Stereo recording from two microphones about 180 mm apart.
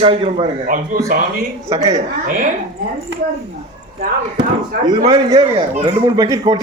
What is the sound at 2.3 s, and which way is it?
Speech, 50° right (ahead or behind).